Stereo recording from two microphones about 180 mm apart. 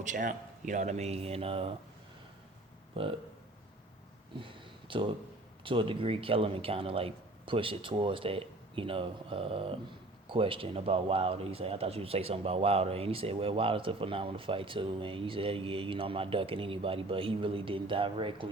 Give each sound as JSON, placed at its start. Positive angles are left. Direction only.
{"t": 0.0, "sound": "speech", "side_deg": -45}
{"t": 2.9, "sound": "speech", "side_deg": -30}
{"t": 4.4, "sound": "a sound", "side_deg": -30}
{"t": 5.6, "sound": "speech", "side_deg": -30}